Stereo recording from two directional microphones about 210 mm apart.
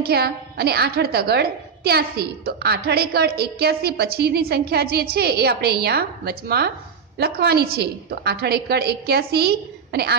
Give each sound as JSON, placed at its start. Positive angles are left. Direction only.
{"t": 0.0, "sound": "a woman's voice", "side_deg": -50}